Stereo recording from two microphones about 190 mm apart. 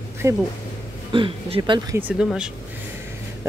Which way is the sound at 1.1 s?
25° right (ahead or behind).